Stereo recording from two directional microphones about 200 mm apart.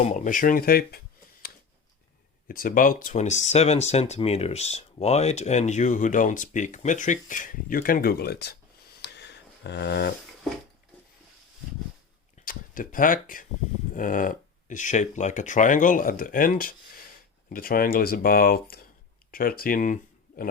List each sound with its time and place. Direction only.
0.0 s speech: 40° left (ahead or behind)
9.0 s a sound: 55° left (ahead or behind)
12.5 s speech: 45° left (ahead or behind)